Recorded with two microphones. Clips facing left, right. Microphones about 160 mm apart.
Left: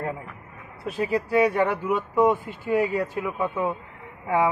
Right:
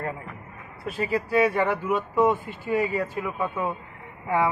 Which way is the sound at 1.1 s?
15° left (ahead or behind).